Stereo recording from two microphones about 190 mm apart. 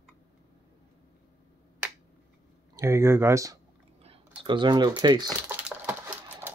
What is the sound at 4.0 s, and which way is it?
Speech, 30° right (ahead or behind).